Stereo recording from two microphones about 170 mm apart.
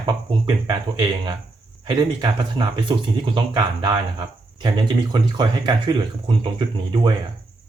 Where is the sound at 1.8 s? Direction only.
25° right (ahead or behind).